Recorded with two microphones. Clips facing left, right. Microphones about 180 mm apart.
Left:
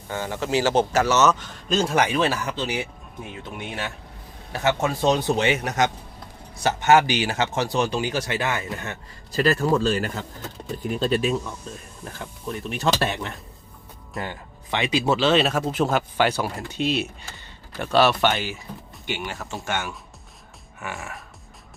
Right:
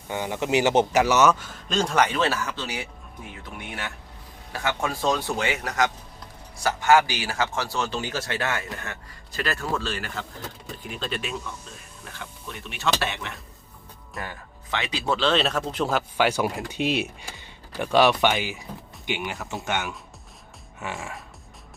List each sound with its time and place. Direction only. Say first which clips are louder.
0.1 s speech: right 1 dB; 15° right (ahead or behind)
1.6 s a man's voice: left 1 dB; 5° left (ahead or behind)
9.3 s speech: left 8 dB; 35° left (ahead or behind)
12.6 s speech: left 3 dB; 40° left (ahead or behind)
14.2 s speech: left 4 dB; 20° left (ahead or behind)
14.8 s speech: left 4 dB; 10° left (ahead or behind); by 21.2 s 25° right (ahead or behind)